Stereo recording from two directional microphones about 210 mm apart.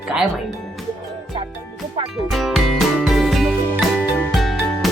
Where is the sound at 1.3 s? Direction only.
25° right (ahead or behind).